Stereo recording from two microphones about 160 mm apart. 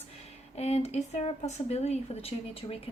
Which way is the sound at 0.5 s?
40° left (ahead or behind).